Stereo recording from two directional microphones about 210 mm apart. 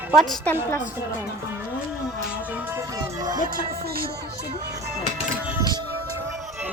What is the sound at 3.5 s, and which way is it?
Music, 45° right (ahead or behind).